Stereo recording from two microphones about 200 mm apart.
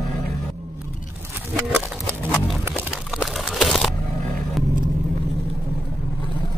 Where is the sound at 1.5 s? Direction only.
10° right (ahead or behind).